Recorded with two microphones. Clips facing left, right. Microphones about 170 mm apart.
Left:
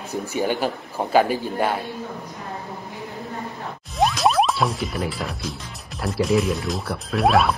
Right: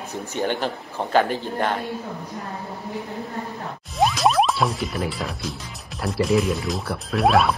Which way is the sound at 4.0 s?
Centre (ahead or behind).